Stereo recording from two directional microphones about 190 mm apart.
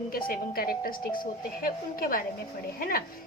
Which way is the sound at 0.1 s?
50° left (ahead or behind).